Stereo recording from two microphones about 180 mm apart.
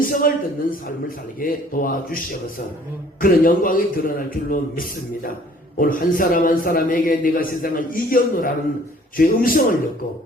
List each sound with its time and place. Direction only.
0.0 s a man's voice: 50° left (ahead or behind)
3.2 s a man's voice: 50° left (ahead or behind)